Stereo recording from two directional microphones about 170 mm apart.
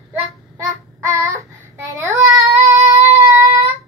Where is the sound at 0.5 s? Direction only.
15° right (ahead or behind).